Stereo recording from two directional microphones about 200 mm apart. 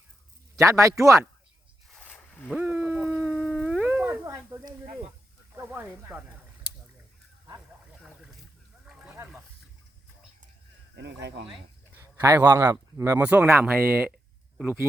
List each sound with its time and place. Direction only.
0.5 s speech: 15° right (ahead or behind)
1.9 s a sound: 10° left (ahead or behind)
2.5 s dog: 10° right (ahead or behind)
5.5 s speech: 10° right (ahead or behind)
8.9 s a sound: 5° right (ahead or behind)
10.9 s speech: 55° right (ahead or behind)
11.9 s speech: 15° right (ahead or behind)